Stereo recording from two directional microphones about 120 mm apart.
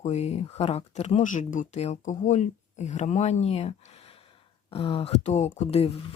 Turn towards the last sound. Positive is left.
turn(degrees=60)  # may be behind; listen again after turning